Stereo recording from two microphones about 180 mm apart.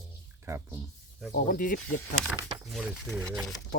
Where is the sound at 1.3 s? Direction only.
50° left (ahead or behind).